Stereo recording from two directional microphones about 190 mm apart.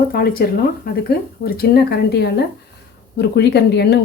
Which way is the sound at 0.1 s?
55° left (ahead or behind).